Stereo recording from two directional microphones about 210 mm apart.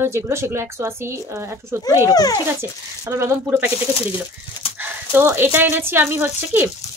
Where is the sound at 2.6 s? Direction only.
10° right (ahead or behind).